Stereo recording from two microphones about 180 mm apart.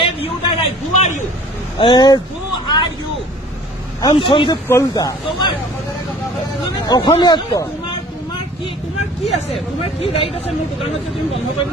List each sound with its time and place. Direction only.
0.0 s a sound: 30° left (ahead or behind)
1.8 s speech: 25° left (ahead or behind)
4.0 s speech: 25° left (ahead or behind)
4.6 s speech: 15° left (ahead or behind)
6.9 s speech: 25° left (ahead or behind)
9.2 s speech: 30° left (ahead or behind)